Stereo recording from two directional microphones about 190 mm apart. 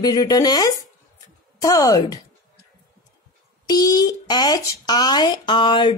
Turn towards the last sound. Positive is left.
turn(degrees=25)  # may be behind; listen again after turning